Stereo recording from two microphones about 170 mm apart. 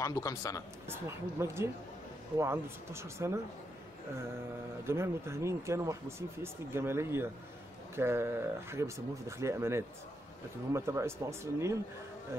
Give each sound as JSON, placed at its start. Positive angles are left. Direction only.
{"t": 0.0, "sound": "a man's voice", "side_deg": 20}
{"t": 0.8, "sound": "speech", "side_deg": -15}
{"t": 4.8, "sound": "speech", "side_deg": -15}